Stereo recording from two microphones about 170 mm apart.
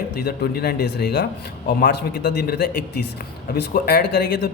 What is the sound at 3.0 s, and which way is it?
Speech, 65° left (ahead or behind).